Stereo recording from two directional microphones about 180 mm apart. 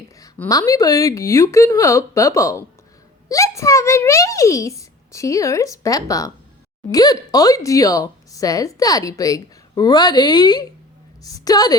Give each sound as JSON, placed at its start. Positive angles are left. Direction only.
{"t": 0.3, "sound": "a child's voice", "side_deg": 15}